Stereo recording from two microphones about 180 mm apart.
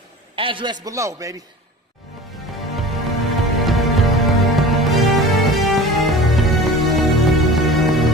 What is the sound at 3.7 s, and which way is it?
Music, centre (ahead or behind).